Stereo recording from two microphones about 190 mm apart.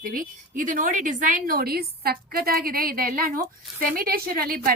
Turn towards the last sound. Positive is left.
turn(degrees=-50)  # may be behind; listen again after turning